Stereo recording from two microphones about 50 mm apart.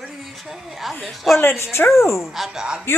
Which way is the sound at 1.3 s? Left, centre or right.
Left.